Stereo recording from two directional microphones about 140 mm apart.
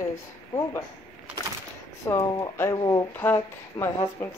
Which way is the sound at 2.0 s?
20° left (ahead or behind).